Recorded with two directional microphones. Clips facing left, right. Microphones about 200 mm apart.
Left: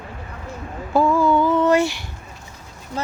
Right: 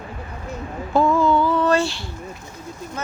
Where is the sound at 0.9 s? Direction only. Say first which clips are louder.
Even; 10° left (ahead or behind).